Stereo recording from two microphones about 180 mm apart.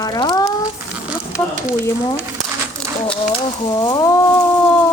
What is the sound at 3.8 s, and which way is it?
Speech, 20° left (ahead or behind).